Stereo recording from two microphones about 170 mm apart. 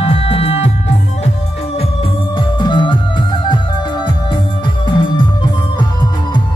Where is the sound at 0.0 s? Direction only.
35° left (ahead or behind).